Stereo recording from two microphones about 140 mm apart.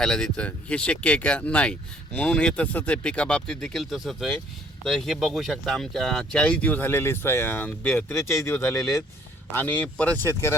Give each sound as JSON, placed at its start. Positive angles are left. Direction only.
{"t": 0.0, "sound": "speech", "side_deg": 5}